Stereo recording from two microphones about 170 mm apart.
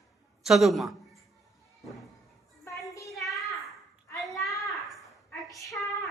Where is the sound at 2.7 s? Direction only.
20° left (ahead or behind).